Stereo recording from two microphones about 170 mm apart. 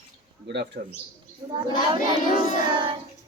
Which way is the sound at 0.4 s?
90° right.